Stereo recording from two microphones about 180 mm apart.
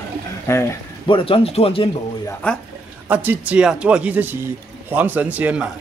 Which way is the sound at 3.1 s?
10° right (ahead or behind).